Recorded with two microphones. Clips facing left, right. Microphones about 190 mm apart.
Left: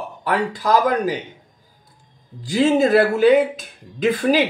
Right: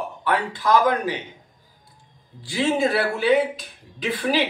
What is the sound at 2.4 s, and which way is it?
Speech, 40° left (ahead or behind).